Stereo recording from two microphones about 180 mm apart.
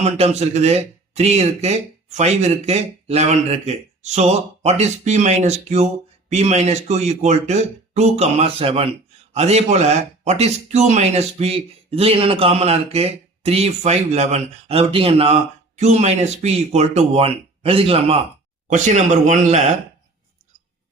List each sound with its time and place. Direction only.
0.0 s speech: 35° right (ahead or behind)